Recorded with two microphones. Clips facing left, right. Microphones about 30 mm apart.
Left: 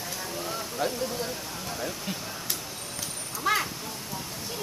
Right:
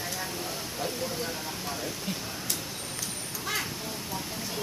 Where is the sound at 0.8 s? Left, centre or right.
Centre.